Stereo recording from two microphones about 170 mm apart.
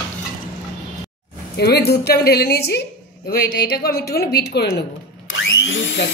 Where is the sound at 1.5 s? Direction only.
75° left (ahead or behind).